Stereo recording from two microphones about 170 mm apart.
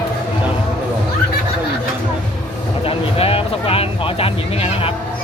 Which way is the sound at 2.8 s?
35° left (ahead or behind).